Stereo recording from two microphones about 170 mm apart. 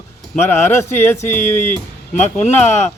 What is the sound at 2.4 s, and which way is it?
Speech, 40° left (ahead or behind).